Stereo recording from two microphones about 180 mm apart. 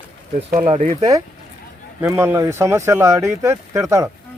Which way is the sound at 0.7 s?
35° right (ahead or behind).